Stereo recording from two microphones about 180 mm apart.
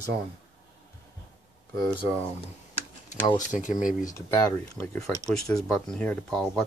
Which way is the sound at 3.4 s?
45° left (ahead or behind).